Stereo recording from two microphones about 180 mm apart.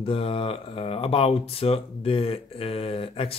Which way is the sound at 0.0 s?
30° left (ahead or behind).